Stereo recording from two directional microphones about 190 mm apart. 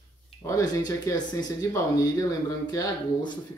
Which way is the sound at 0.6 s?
20° left (ahead or behind).